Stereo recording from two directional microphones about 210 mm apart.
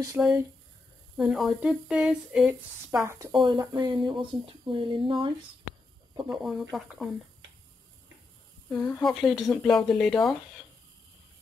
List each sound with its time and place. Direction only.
0.2 s speech: 5° right (ahead or behind)
3.0 s speech: 15° right (ahead or behind)
6.2 s speech: 5° right (ahead or behind)
8.7 s speech: 10° left (ahead or behind)